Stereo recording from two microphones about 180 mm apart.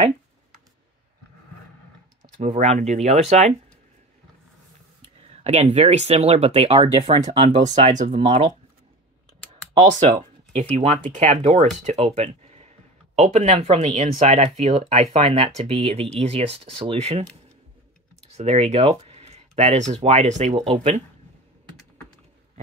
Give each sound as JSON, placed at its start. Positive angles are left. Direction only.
{"t": 2.3, "sound": "speech", "side_deg": -40}
{"t": 5.3, "sound": "speech", "side_deg": -35}
{"t": 10.5, "sound": "speech", "side_deg": -40}
{"t": 18.3, "sound": "speech", "side_deg": -35}